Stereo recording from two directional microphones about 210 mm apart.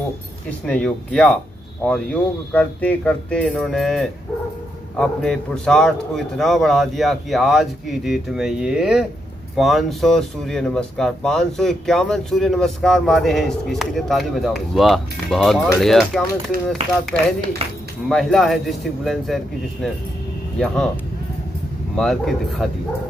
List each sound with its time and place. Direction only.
0.7 s speech: 5° left (ahead or behind)
2.5 s speech: 5° left (ahead or behind)
17.6 s speech: 30° right (ahead or behind)
18.0 s speech: centre (ahead or behind)